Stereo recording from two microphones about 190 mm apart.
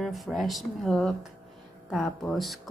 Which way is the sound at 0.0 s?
Centre (ahead or behind).